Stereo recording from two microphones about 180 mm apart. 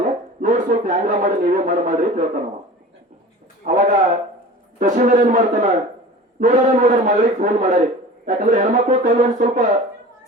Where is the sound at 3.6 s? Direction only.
45° right (ahead or behind).